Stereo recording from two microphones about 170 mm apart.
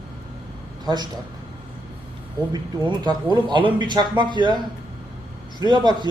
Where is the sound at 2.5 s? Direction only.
25° right (ahead or behind).